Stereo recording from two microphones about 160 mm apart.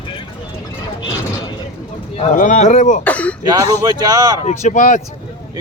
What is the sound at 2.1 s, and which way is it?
Speech, 45° left (ahead or behind).